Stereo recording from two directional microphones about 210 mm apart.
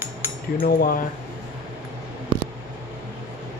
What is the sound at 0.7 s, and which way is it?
Speech, 45° left (ahead or behind).